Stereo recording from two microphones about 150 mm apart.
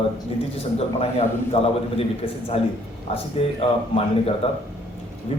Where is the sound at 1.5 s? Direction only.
40° left (ahead or behind).